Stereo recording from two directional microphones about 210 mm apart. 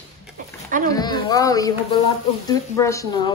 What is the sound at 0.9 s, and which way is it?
Speech, 20° left (ahead or behind).